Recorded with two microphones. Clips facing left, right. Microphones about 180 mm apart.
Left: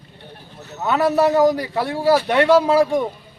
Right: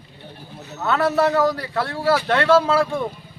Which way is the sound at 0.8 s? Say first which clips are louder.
Left 2 dB; 15° left (ahead or behind).